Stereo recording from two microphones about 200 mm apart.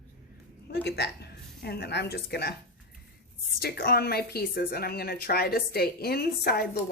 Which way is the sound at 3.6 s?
50° left (ahead or behind).